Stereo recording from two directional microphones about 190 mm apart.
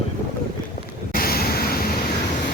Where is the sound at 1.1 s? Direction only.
50° left (ahead or behind).